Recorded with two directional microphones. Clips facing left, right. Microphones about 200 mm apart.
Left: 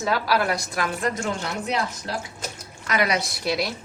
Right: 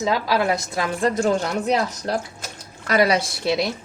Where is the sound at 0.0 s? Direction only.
20° right (ahead or behind).